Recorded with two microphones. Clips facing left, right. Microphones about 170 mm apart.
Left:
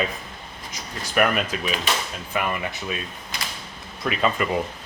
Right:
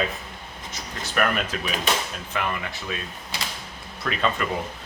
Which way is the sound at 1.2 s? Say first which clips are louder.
Left 3 dB; 10° left (ahead or behind).